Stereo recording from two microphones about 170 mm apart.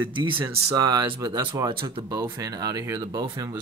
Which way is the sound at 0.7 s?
25° right (ahead or behind).